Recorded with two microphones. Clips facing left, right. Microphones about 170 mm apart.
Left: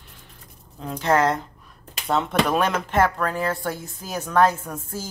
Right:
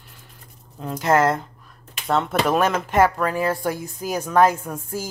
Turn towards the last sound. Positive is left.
turn(degrees=-10)  # may be behind; listen again after turning